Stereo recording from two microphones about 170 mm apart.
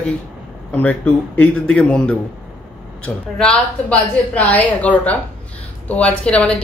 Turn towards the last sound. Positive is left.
turn(degrees=5)  # may be behind; listen again after turning